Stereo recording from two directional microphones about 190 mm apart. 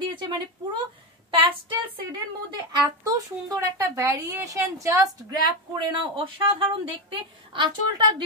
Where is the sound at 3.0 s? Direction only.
20° right (ahead or behind).